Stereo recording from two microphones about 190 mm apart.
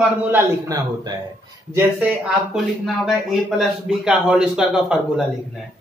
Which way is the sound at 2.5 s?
Centre (ahead or behind).